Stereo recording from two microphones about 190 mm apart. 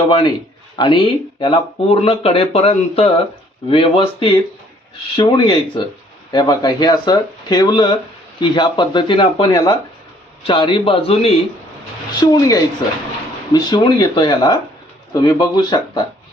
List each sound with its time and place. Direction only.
0.1 s speech: 25° left (ahead or behind)
12.2 s speech: 20° left (ahead or behind)